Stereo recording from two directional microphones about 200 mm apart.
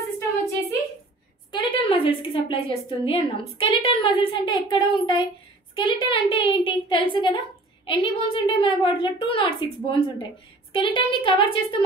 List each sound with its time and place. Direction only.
1.5 s a woman's voice: 25° left (ahead or behind)